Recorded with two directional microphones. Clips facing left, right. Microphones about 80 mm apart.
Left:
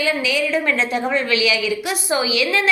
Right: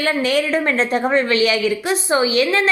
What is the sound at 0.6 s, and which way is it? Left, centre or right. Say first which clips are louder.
A woman's voice: right 2 dB; right.